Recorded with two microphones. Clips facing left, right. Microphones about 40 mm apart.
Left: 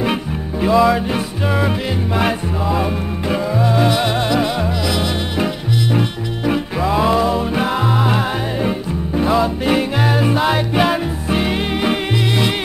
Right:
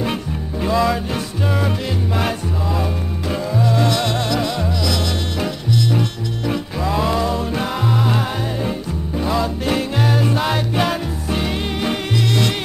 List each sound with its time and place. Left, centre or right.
0.0 s music: centre